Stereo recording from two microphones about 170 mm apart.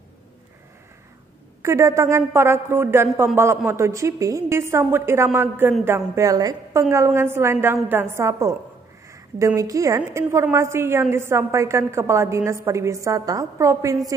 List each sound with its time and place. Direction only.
1.6 s a woman's voice: 15° right (ahead or behind)